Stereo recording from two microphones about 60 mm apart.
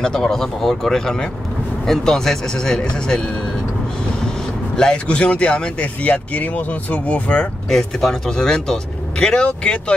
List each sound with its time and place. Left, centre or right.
0.0 s speech: centre
4.7 s speech: centre
7.7 s speech: centre